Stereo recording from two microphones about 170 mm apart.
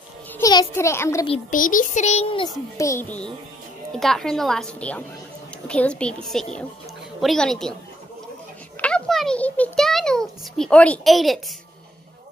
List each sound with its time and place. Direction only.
0.3 s a child's voice: 20° left (ahead or behind)
1.5 s a child's voice: 50° left (ahead or behind); by 2.5 s 30° left (ahead or behind)
2.8 s a woman's voice: 15° left (ahead or behind)
8.8 s a child's voice: 5° left (ahead or behind)